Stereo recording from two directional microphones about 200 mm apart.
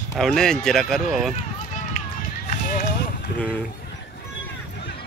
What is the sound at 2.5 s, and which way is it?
Run, 40° left (ahead or behind).